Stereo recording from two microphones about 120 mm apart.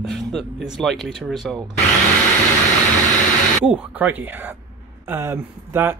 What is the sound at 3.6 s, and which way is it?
Speech, 10° right (ahead or behind).